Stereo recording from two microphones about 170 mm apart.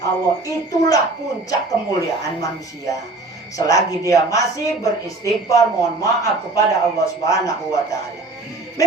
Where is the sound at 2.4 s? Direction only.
20° left (ahead or behind).